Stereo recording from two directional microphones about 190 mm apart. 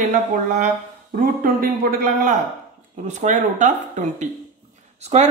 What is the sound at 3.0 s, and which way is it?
Speech, 40° right (ahead or behind).